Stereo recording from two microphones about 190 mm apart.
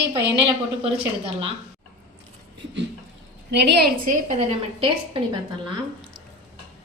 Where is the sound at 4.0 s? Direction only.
40° right (ahead or behind).